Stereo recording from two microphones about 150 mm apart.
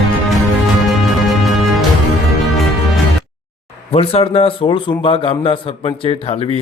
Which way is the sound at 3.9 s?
40° left (ahead or behind).